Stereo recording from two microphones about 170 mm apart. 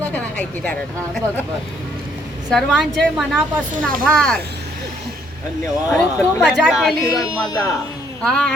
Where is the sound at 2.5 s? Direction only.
5° left (ahead or behind).